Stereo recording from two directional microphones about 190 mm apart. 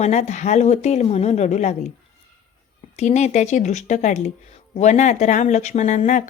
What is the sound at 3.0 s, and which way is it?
Speech, 35° left (ahead or behind).